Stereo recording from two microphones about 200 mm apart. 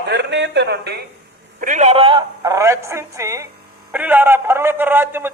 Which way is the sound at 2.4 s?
15° right (ahead or behind).